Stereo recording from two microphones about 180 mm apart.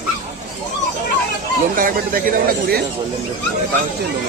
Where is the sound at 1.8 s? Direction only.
50° right (ahead or behind).